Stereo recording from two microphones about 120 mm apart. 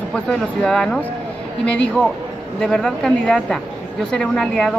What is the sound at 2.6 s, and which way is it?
A woman's voice, 5° left (ahead or behind).